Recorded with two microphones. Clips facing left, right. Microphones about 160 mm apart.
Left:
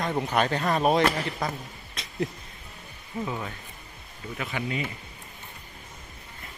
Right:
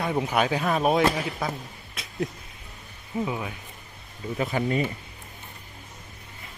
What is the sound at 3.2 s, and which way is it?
Speech, 10° right (ahead or behind).